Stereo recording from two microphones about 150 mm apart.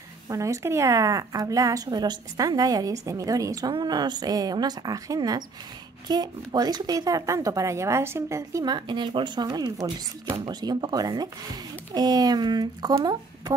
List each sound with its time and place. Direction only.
0.3 s a woman's voice: 20° right (ahead or behind)